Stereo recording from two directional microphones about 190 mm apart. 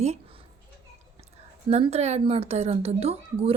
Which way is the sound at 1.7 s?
35° right (ahead or behind).